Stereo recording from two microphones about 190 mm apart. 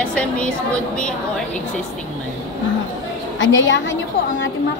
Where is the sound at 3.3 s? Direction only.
80° left.